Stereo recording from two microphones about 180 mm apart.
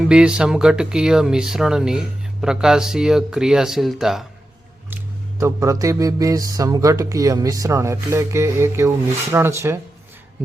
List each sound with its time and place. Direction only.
0.1 s speech: 5° right (ahead or behind)
4.9 s mantra: 15° right (ahead or behind)
9.3 s speech: 15° right (ahead or behind)